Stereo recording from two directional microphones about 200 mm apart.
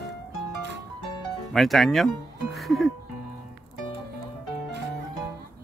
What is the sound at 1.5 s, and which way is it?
Speech, centre (ahead or behind).